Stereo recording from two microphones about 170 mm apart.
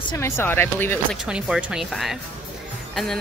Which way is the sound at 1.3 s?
5° right (ahead or behind).